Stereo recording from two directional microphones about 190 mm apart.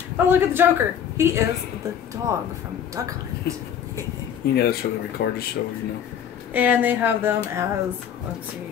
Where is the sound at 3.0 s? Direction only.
20° right (ahead or behind).